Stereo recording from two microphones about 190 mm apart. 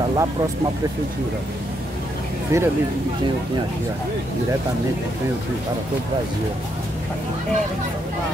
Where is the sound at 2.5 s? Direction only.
15° right (ahead or behind).